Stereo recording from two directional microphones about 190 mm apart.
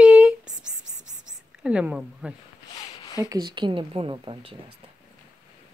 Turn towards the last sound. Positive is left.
turn(degrees=-25)  # may be behind; listen again after turning